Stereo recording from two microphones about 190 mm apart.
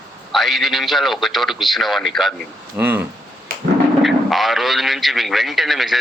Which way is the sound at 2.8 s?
10° right (ahead or behind).